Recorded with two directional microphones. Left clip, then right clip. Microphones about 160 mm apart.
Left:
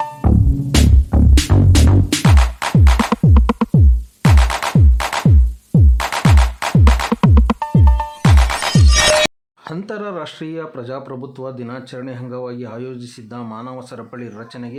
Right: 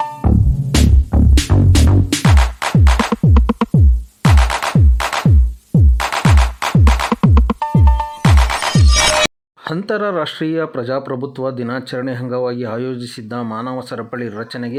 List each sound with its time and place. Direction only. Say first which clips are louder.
0.0 s music: right 1 dB; centre (ahead or behind)
9.6 s speech: right 8 dB; 30° right (ahead or behind)